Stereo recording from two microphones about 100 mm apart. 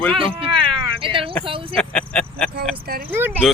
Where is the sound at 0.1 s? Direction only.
60° right (ahead or behind).